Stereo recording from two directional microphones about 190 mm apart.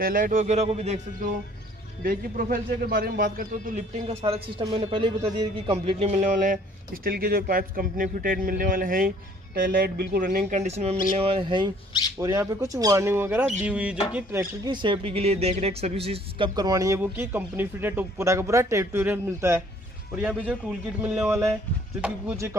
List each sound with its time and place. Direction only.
0.0 s speech: 45° right (ahead or behind)
2.0 s a man's voice: 45° right (ahead or behind); by 22.6 s 10° right (ahead or behind)